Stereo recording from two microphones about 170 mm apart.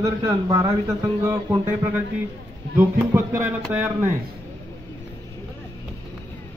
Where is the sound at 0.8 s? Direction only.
15° right (ahead or behind).